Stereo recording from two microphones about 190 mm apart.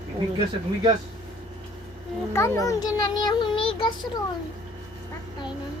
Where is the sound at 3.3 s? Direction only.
25° left (ahead or behind).